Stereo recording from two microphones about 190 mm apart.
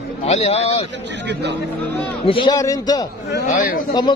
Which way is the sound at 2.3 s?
25° left (ahead or behind).